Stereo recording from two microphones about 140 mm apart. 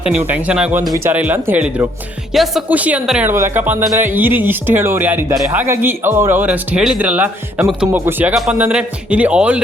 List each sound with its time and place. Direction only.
0.0 s speech: 10° right (ahead or behind)
2.3 s speech: centre (ahead or behind)